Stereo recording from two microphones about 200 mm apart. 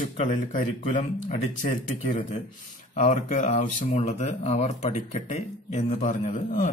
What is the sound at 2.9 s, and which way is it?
Speech, 35° left (ahead or behind).